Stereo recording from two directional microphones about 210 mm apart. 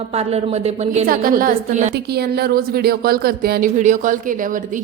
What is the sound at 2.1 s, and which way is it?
A woman's voice, 50° right (ahead or behind).